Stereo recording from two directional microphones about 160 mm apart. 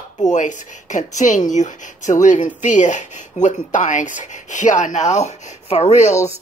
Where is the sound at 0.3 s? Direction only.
50° left (ahead or behind).